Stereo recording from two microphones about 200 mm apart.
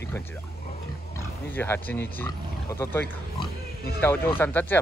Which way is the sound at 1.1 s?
10° left (ahead or behind).